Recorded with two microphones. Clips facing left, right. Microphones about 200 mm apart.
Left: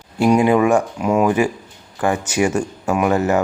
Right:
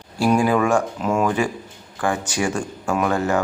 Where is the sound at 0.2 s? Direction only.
20° left (ahead or behind).